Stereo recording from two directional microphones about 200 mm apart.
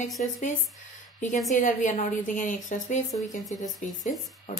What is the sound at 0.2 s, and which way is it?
Speech, 40° left (ahead or behind).